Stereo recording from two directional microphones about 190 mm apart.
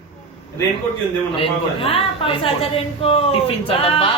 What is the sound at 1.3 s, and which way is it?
A woman's voice, 30° left (ahead or behind).